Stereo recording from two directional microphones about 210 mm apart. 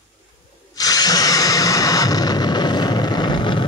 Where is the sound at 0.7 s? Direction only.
15° left (ahead or behind).